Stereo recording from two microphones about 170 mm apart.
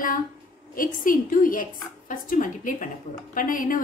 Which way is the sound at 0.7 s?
55° left (ahead or behind).